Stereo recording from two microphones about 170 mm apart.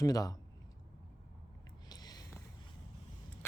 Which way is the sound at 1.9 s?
25° left (ahead or behind).